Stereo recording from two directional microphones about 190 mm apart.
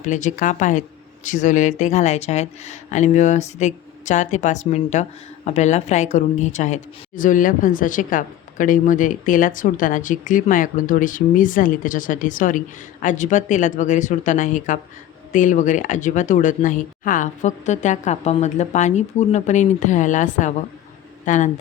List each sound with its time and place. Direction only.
0.0 s a woman's voice: 40° left (ahead or behind)